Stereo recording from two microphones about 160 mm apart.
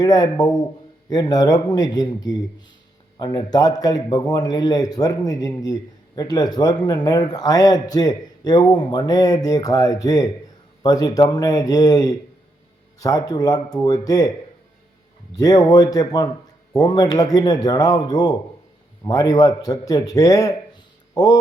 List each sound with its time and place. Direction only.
0.0 s a man's voice: 25° left (ahead or behind)
15.4 s a man's voice: 25° left (ahead or behind)